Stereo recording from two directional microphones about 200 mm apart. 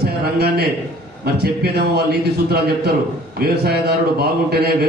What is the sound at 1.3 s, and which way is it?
A man's voice, 55° right (ahead or behind).